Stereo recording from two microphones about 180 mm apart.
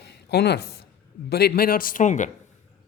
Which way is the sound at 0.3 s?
65° left (ahead or behind).